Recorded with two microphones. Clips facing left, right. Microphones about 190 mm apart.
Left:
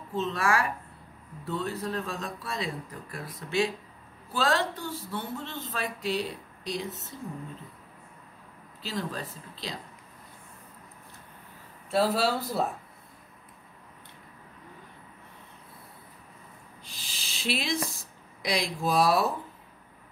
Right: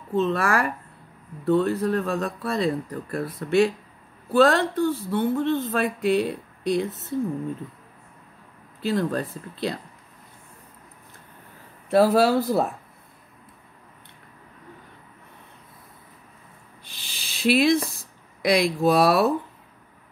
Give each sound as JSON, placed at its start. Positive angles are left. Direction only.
{"t": 0.1, "sound": "speech", "side_deg": -60}
{"t": 8.8, "sound": "speech", "side_deg": -55}
{"t": 11.9, "sound": "speech", "side_deg": -55}
{"t": 17.0, "sound": "a sound", "side_deg": -60}
{"t": 18.4, "sound": "speech", "side_deg": -65}